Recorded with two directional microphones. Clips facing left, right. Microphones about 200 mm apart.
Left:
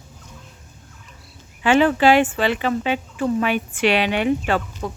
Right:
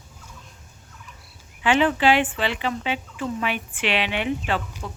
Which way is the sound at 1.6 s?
45° left (ahead or behind).